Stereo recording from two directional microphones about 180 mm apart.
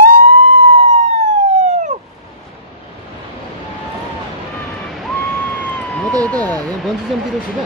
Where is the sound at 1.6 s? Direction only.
40° right (ahead or behind).